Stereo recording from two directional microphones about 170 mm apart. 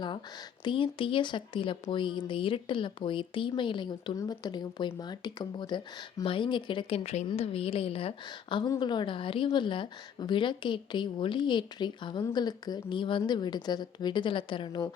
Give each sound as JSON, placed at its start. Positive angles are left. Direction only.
{"t": 0.6, "sound": "speech", "side_deg": 30}